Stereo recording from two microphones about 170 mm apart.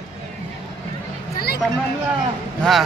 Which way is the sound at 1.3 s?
65° left (ahead or behind).